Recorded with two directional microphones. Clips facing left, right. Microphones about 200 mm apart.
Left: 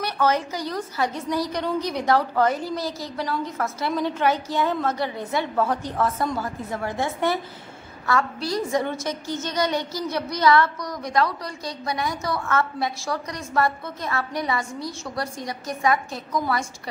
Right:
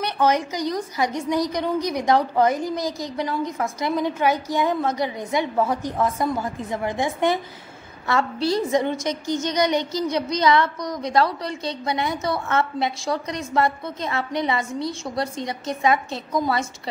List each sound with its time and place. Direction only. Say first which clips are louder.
0.0 s a woman's voice: right 2 dB; 15° right (ahead or behind)
8.1 s speech: right 3 dB; 25° right (ahead or behind)